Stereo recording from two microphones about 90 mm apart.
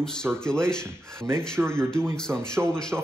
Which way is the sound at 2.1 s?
10° left (ahead or behind).